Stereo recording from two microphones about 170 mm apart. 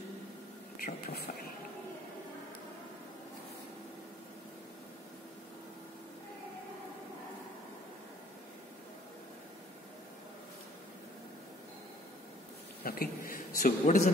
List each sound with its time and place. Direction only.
0.7 s speech: 60° left (ahead or behind)
12.8 s a man's voice: 60° left (ahead or behind)